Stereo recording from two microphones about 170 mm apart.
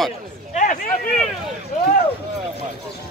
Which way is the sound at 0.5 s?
50° left (ahead or behind).